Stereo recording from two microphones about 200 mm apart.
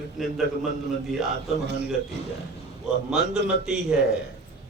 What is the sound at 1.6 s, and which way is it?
Speech, 55° right (ahead or behind).